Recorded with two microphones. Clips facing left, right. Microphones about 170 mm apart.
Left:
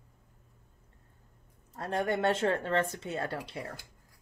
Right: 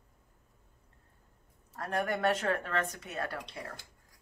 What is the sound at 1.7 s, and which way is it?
Speech, 25° left (ahead or behind).